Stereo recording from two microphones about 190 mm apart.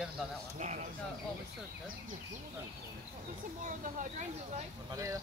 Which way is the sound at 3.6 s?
40° right (ahead or behind).